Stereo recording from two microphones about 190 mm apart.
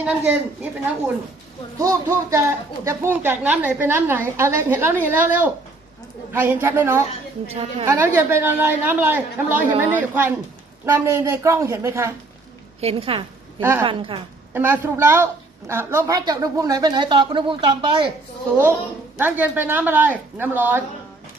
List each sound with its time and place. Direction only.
0.0 s a woman's voice: 5° right (ahead or behind)
7.4 s a woman's voice: 30° right (ahead or behind)
7.9 s a woman's voice: 15° right (ahead or behind)
12.8 s a woman's voice: 30° right (ahead or behind)
13.6 s a woman's voice: 10° right (ahead or behind)
13.8 s a woman's voice: 30° right (ahead or behind)
14.5 s a woman's voice: 10° right (ahead or behind); by 18.1 s 25° right (ahead or behind)
19.1 s a woman's voice: 10° right (ahead or behind)